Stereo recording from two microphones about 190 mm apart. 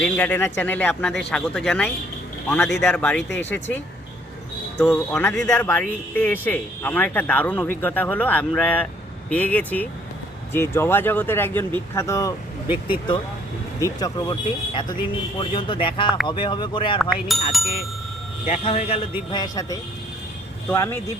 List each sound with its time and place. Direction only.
0.0 s speech: 10° left (ahead or behind)
5.1 s speech: 5° left (ahead or behind)
13.7 s speech: 20° left (ahead or behind)
17.0 s speech: centre (ahead or behind)
18.4 s a man's voice: 35° left (ahead or behind); by 21.0 s 10° left (ahead or behind)